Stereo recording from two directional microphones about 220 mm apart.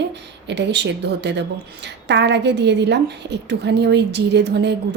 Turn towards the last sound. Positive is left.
turn(degrees=-50)  # may be behind; listen again after turning